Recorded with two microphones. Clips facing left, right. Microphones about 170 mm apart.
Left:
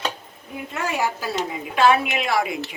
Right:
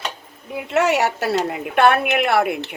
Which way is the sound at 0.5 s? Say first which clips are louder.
Right 9 dB; 80° right.